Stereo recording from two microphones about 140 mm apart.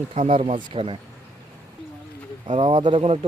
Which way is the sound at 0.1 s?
45° right (ahead or behind).